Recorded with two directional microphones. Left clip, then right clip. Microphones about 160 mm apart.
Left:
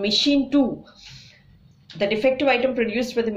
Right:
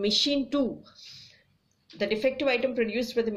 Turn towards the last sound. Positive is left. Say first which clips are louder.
# left 4 dB
turn(degrees=-20)  # may be behind; listen again after turning